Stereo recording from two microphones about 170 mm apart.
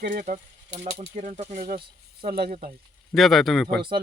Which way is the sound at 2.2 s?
60° right (ahead or behind).